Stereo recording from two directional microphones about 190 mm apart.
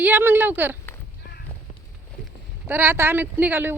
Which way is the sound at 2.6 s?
10° right (ahead or behind).